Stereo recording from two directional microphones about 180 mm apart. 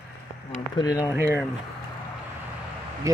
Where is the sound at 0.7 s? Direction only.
20° left (ahead or behind).